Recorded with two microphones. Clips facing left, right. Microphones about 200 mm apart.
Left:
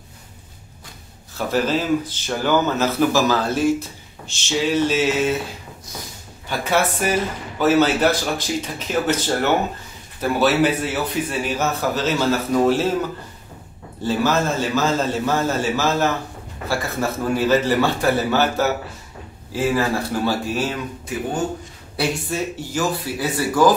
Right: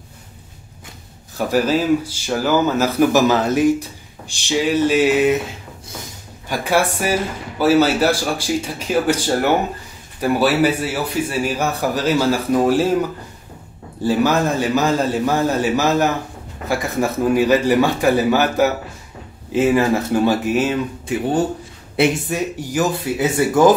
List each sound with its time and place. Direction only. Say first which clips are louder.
1.4 s speech: right 3 dB; 10° right (ahead or behind)
6.5 s speech: right 2 dB; 10° right (ahead or behind)
14.0 s speech: right 3 dB; 15° right (ahead or behind)
21.9 s speech: right 5 dB; 20° right (ahead or behind)